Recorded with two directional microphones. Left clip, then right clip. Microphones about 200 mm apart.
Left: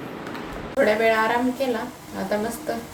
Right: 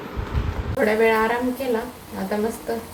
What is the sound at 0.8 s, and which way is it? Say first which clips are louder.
Speech: even; 10° left (ahead or behind).